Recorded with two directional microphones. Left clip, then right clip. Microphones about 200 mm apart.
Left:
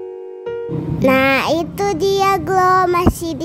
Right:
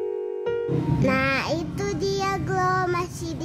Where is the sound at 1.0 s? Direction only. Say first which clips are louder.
Left 11 dB; 40° left (ahead or behind).